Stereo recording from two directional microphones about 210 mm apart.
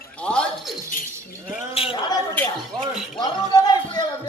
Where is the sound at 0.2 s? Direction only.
5° left (ahead or behind).